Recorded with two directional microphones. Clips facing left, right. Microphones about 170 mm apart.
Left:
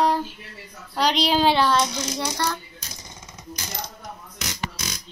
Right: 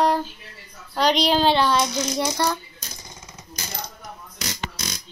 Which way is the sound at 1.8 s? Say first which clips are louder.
Right 2 dB; 15° right (ahead or behind).